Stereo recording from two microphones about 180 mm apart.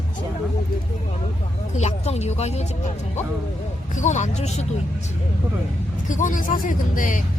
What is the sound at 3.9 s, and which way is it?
Speech, 40° left (ahead or behind).